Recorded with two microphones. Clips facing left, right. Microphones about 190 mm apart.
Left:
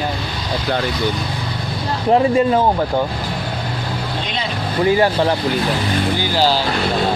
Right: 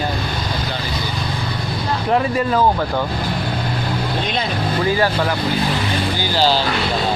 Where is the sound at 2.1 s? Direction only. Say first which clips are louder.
Left 5 dB; 25° left (ahead or behind).